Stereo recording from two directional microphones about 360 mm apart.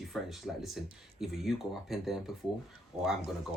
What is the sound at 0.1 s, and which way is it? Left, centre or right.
Speech, centre.